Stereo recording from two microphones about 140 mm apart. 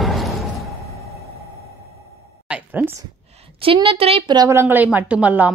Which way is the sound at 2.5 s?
10° right (ahead or behind).